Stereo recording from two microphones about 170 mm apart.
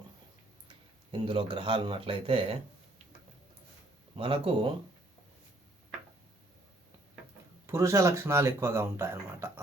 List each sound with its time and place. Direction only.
0.7 s speech: 30° right (ahead or behind)
4.2 s speech: 30° right (ahead or behind)
7.7 s speech: 15° right (ahead or behind)